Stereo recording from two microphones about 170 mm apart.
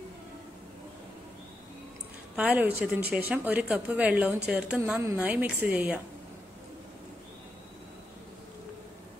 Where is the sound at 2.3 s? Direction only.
10° right (ahead or behind).